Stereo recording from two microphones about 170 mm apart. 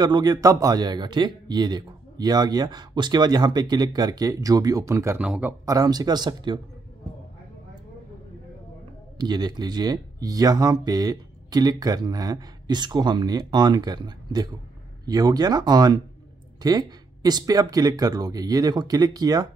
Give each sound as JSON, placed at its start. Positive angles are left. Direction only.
{"t": 0.0, "sound": "speech", "side_deg": -25}
{"t": 5.2, "sound": "speech", "side_deg": -5}
{"t": 5.7, "sound": "speech", "side_deg": -20}
{"t": 9.2, "sound": "speech", "side_deg": -25}